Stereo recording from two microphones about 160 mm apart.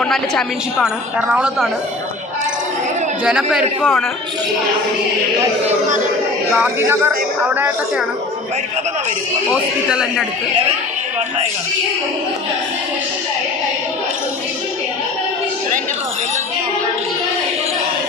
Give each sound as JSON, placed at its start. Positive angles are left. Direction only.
{"t": 0.0, "sound": "a woman's voice", "side_deg": 5}
{"t": 3.2, "sound": "a woman's voice", "side_deg": -5}
{"t": 6.7, "sound": "speech", "side_deg": -15}
{"t": 9.5, "sound": "a woman's voice", "side_deg": -5}